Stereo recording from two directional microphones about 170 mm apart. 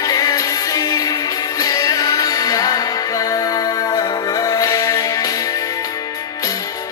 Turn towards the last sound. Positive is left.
turn(degrees=20)  # may be behind; listen again after turning